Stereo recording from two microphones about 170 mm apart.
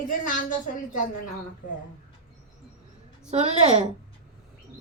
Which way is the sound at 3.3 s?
40° right (ahead or behind).